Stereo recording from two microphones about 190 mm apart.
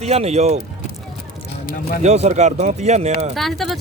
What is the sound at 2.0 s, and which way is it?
Speech, 35° right (ahead or behind).